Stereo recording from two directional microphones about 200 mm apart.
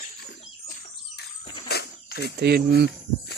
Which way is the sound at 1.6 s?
50° left (ahead or behind).